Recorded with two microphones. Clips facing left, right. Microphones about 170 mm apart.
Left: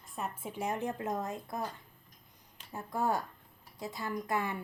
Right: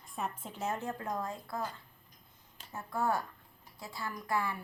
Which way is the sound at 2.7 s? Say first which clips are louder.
Left 1 dB; 15° left (ahead or behind).